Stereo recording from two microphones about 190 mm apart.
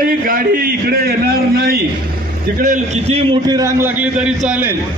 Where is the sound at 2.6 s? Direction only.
40° right (ahead or behind).